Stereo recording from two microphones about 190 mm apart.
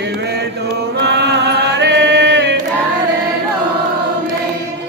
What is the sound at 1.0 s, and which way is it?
Chant, 60° right (ahead or behind).